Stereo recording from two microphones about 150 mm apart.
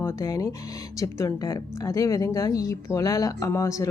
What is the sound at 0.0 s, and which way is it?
A woman's voice, 20° left (ahead or behind).